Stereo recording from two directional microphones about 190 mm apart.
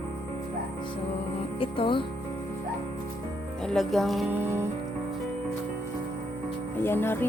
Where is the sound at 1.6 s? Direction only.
25° left (ahead or behind).